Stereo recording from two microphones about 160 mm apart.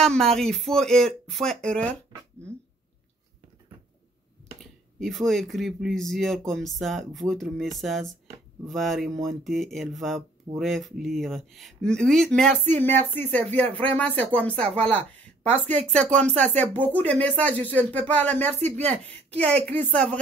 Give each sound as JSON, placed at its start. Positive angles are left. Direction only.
{"t": 0.0, "sound": "speech", "side_deg": 5}
{"t": 4.6, "sound": "speech", "side_deg": 0}
{"t": 15.6, "sound": "speech", "side_deg": 10}
{"t": 16.4, "sound": "speech", "side_deg": -45}
{"t": 16.7, "sound": "speech", "side_deg": 10}
{"t": 18.8, "sound": "a woman's voice", "side_deg": -40}
{"t": 19.3, "sound": "speech", "side_deg": 10}